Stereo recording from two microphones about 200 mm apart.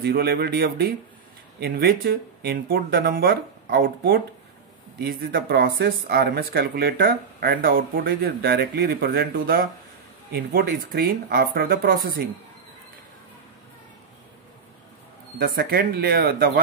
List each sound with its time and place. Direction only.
0.0 s speech: 55° right (ahead or behind)
15.3 s speech: 50° right (ahead or behind)